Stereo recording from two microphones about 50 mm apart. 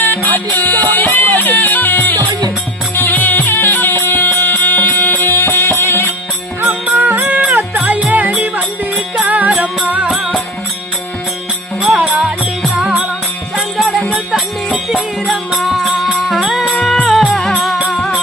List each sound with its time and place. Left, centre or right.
0.0 s music: left
5.2 s music: left
6.6 s music: right
12.0 s music: right
13.6 s music: centre
15.6 s music: centre